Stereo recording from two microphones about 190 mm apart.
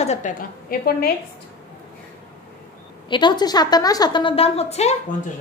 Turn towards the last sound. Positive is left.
turn(degrees=35)  # may be behind; listen again after turning